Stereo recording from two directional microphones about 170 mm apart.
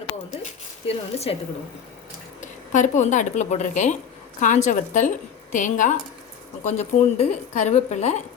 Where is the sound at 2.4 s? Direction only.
45° left (ahead or behind).